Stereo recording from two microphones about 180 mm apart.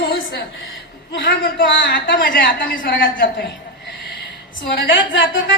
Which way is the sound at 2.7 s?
50° left (ahead or behind).